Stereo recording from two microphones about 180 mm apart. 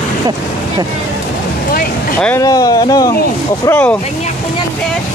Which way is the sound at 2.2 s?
15° left (ahead or behind).